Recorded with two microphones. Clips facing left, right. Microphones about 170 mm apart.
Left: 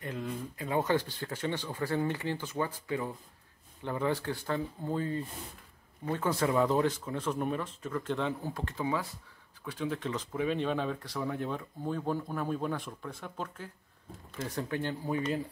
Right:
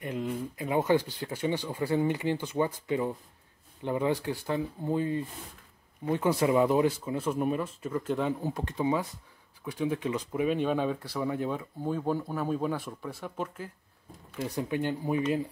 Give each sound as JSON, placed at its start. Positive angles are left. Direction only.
{"t": 0.0, "sound": "speech", "side_deg": -15}